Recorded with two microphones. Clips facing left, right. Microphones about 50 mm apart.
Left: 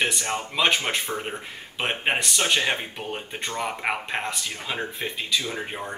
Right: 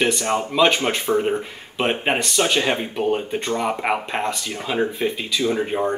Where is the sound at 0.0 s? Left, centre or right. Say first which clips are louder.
Right 6 dB; centre.